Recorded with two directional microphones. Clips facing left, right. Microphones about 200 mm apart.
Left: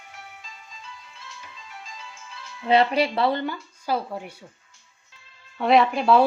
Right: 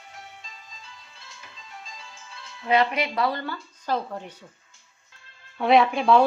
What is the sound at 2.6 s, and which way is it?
Speech, 30° left (ahead or behind).